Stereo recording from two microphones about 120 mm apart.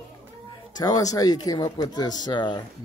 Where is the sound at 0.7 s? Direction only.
30° left (ahead or behind).